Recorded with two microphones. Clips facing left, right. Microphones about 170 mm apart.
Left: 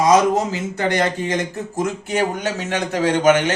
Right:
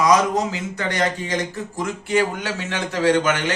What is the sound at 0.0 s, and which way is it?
Speech, 25° left (ahead or behind).